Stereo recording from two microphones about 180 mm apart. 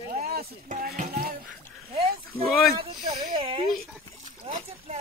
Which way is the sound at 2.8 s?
30° right (ahead or behind).